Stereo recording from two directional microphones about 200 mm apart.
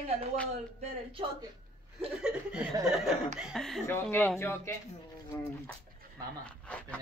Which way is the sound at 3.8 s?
15° left (ahead or behind).